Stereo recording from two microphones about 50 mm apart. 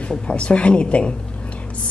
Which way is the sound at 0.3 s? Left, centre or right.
Left.